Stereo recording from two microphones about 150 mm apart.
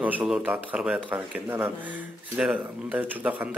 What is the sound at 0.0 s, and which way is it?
Speech, 10° right (ahead or behind).